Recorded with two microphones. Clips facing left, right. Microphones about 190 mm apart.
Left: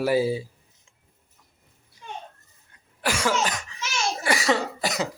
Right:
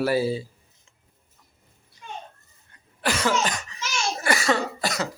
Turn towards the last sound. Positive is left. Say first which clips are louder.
# even
turn(degrees=20)  # may be behind; listen again after turning